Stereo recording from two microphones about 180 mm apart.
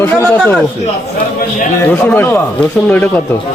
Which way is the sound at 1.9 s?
10° left (ahead or behind).